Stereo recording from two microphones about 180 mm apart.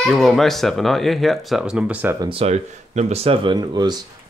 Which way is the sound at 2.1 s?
30° right (ahead or behind).